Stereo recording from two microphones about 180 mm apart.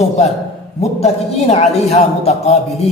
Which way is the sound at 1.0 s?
35° left (ahead or behind).